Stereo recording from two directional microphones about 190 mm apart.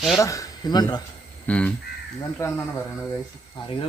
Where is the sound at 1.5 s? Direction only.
5° left (ahead or behind).